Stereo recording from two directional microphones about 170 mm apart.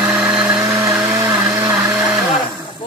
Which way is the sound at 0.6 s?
20° right (ahead or behind).